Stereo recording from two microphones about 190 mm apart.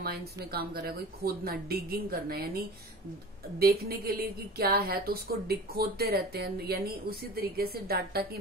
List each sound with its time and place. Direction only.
0.0 s speech: 55° right (ahead or behind)